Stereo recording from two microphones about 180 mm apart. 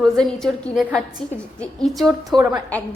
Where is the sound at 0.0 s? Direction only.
Centre (ahead or behind).